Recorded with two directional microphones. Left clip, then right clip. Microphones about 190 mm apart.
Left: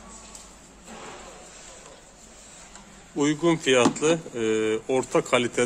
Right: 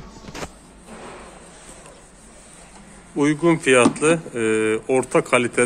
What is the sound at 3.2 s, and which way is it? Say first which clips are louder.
Speech: right 5 dB; centre (ahead or behind).